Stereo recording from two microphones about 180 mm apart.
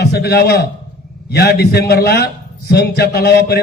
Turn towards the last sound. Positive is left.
turn(degrees=60)  # may be behind; listen again after turning